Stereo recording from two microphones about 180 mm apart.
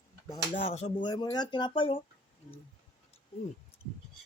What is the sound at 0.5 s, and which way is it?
Speech, 35° left (ahead or behind).